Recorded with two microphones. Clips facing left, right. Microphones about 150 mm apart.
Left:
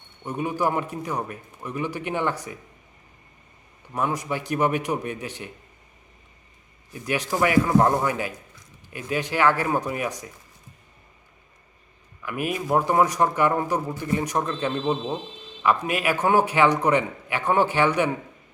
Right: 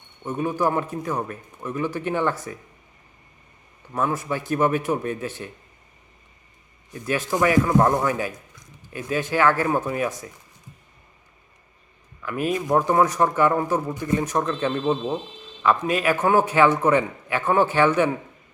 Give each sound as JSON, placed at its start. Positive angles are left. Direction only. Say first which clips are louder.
{"t": 0.3, "sound": "a man's voice", "louder": "right 2 dB", "side_deg": 15}
{"t": 3.9, "sound": "a man's voice", "louder": "right 1 dB", "side_deg": 15}
{"t": 6.9, "sound": "a man's voice", "louder": "right 2 dB", "side_deg": 15}
{"t": 9.0, "sound": "a man's voice", "louder": "right 2 dB", "side_deg": 15}
{"t": 12.2, "sound": "a man's voice", "louder": "right 3 dB", "side_deg": 10}
{"t": 14.8, "sound": "speech", "louder": "right 3 dB", "side_deg": -5}
{"t": 15.6, "sound": "a man's voice", "louder": "right 2 dB", "side_deg": 10}